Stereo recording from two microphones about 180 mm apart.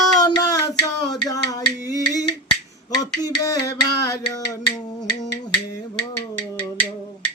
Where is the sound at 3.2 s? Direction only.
20° left (ahead or behind).